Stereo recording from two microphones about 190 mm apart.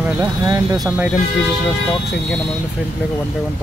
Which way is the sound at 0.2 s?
20° right (ahead or behind).